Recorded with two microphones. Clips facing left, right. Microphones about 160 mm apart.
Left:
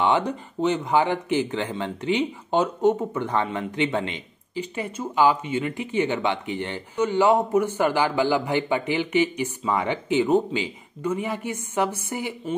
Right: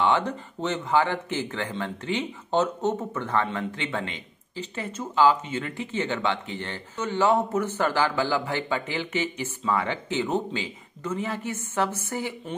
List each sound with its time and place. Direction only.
0.0 s speech: 15° left (ahead or behind)